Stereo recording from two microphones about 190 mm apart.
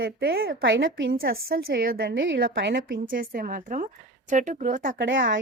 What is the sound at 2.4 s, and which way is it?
A woman's voice, 65° right (ahead or behind).